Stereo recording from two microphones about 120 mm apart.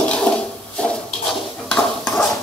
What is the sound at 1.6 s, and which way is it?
Dishes, 5° left (ahead or behind).